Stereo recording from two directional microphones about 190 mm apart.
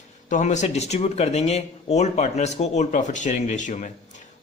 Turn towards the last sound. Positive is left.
turn(degrees=40)  # may be behind; listen again after turning